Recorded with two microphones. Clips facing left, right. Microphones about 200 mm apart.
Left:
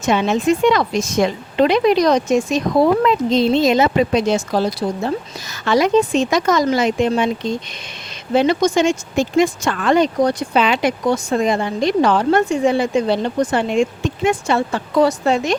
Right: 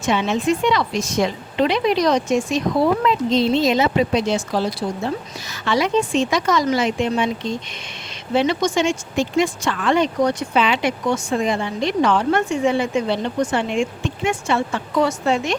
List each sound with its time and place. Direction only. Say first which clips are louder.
0.0 s a woman's voice: left 3 dB; 45° left (ahead or behind)
5.6 s a woman's voice: left 5 dB; 45° left (ahead or behind)
8.3 s speech: left 4 dB; 40° left (ahead or behind)